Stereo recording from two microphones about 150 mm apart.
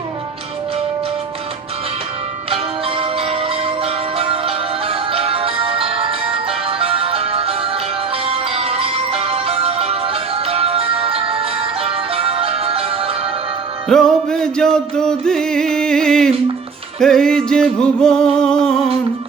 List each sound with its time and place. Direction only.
2.5 s music: 40° right (ahead or behind)
13.8 s music: 5° left (ahead or behind)